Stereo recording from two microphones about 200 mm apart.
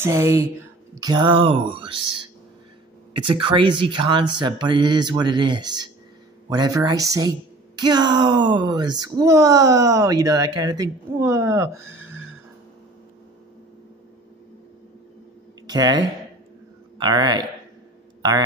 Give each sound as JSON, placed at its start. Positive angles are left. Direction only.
{"t": 0.0, "sound": "speech", "side_deg": -15}
{"t": 15.7, "sound": "speech", "side_deg": -20}